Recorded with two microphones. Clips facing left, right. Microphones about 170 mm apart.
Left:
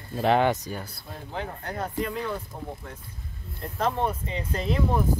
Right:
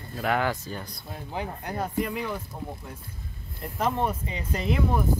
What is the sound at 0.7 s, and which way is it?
Speech, 5° left (ahead or behind).